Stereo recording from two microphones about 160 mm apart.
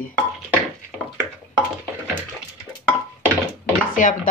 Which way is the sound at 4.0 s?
55° left (ahead or behind).